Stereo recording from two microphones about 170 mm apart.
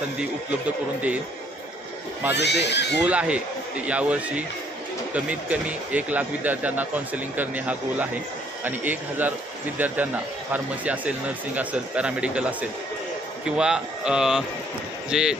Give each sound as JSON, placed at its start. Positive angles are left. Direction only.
{"t": 2.3, "sound": "speech", "side_deg": 85}
{"t": 3.1, "sound": "speech", "side_deg": -5}
{"t": 13.6, "sound": "speech", "side_deg": -5}